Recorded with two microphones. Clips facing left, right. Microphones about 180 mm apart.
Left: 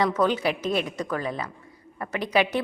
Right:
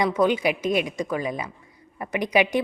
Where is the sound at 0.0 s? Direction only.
10° right (ahead or behind).